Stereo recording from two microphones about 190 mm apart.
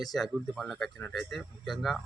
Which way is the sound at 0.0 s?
Centre (ahead or behind).